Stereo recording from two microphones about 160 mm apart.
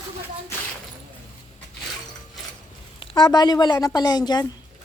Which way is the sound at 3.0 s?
30° left (ahead or behind).